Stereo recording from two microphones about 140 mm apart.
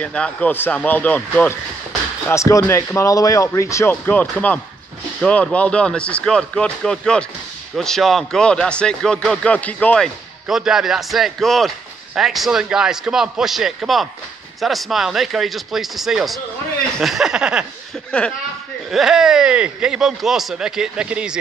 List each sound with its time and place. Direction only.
0.0 s speech: 10° left (ahead or behind)
2.2 s speech: 20° left (ahead or behind); by 17.6 s 5° right (ahead or behind)
18.9 s speech: centre (ahead or behind)